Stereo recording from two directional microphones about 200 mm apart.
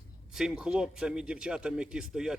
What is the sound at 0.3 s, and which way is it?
A man's voice, 5° right (ahead or behind).